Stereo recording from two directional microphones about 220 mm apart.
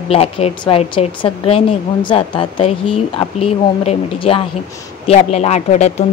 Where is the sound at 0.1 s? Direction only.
25° left (ahead or behind).